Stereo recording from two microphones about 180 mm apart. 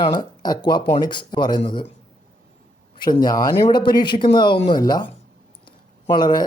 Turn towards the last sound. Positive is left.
turn(degrees=25)  # may be behind; listen again after turning